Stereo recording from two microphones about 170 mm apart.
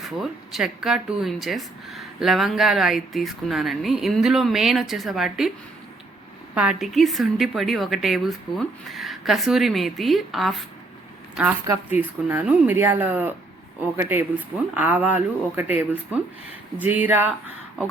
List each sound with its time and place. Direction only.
0.0 s speech: centre (ahead or behind)
6.5 s speech: 5° right (ahead or behind)
11.6 s speech: 15° right (ahead or behind)